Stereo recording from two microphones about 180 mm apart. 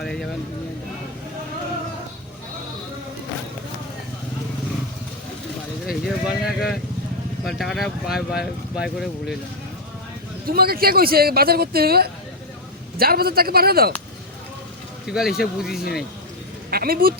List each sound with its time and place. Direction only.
0.0 s speech: 5° left (ahead or behind)
5.8 s vehicle: centre (ahead or behind)
7.4 s speech: centre (ahead or behind)
10.4 s speech: 55° right (ahead or behind)
15.0 s speech: 5° right (ahead or behind)
16.7 s speech: 55° right (ahead or behind)